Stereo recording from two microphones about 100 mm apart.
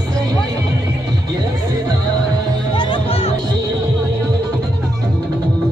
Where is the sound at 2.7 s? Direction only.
55° left (ahead or behind).